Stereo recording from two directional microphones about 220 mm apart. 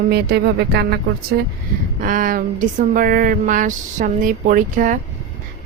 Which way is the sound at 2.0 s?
35° right (ahead or behind).